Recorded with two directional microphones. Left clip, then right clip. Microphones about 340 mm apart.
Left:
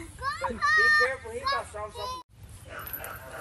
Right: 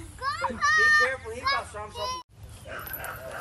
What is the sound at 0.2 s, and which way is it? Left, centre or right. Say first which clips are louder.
Children playing: right 2 dB; centre.